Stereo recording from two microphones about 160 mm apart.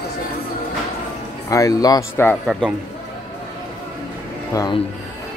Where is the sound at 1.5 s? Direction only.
20° left (ahead or behind).